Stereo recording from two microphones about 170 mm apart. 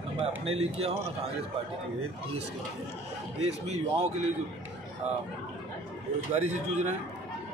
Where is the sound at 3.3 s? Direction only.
40° right (ahead or behind).